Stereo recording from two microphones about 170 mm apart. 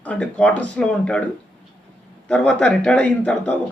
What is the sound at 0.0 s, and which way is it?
Speech, 5° left (ahead or behind).